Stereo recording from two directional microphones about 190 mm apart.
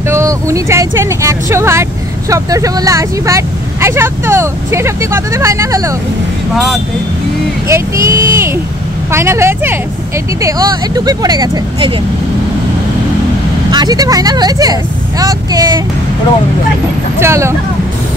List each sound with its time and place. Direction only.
0.1 s speech: 15° right (ahead or behind)
6.5 s speech: centre (ahead or behind)
7.6 s speech: 15° right (ahead or behind)
13.7 s speech: 20° right (ahead or behind)
17.2 s speech: 15° right (ahead or behind)